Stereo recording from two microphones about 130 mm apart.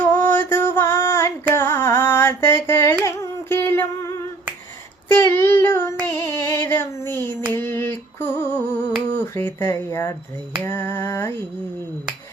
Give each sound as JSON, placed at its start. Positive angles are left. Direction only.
{"t": 0.0, "sound": "music", "side_deg": 15}
{"t": 1.5, "sound": "carnatic music", "side_deg": 20}
{"t": 3.0, "sound": "music", "side_deg": 20}
{"t": 5.1, "sound": "child singing", "side_deg": 20}
{"t": 6.1, "sound": "female singing", "side_deg": 20}
{"t": 7.5, "sound": "a sound", "side_deg": 20}